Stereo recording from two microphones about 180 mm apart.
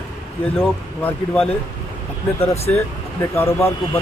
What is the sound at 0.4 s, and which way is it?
Speech, centre (ahead or behind).